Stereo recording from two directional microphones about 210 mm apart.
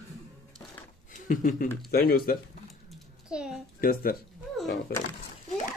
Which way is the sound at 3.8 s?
45° left (ahead or behind).